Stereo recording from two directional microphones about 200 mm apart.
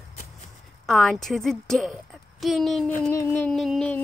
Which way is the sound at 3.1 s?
15° left (ahead or behind).